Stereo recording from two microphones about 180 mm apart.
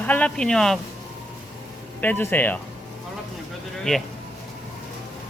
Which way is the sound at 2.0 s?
10° left (ahead or behind).